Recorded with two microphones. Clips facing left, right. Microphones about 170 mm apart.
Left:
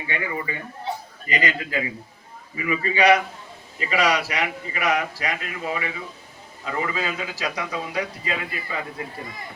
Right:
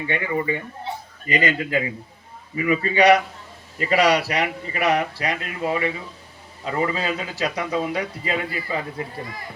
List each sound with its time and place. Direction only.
0.1 s a man's voice: 30° right (ahead or behind)
2.6 s a man's voice: 35° right (ahead or behind)